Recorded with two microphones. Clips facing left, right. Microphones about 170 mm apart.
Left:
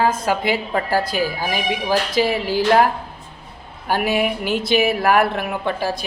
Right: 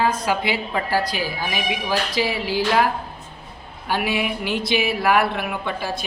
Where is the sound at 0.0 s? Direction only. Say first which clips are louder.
Left 2 dB; 45° left (ahead or behind).